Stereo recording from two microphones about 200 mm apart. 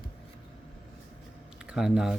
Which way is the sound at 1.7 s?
5° right (ahead or behind).